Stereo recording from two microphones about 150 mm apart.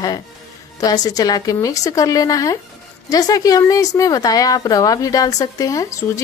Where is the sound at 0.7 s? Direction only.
25° left (ahead or behind).